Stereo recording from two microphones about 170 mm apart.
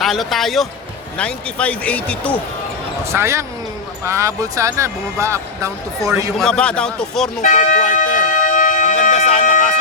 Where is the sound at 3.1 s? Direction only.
15° right (ahead or behind).